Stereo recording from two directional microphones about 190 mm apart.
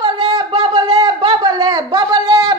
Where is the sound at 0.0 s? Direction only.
20° right (ahead or behind).